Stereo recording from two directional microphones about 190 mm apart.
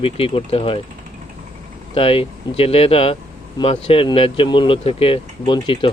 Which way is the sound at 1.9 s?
30° left (ahead or behind).